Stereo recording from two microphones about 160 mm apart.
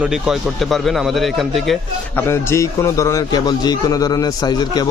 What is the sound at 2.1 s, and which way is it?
A man's voice, 15° left (ahead or behind).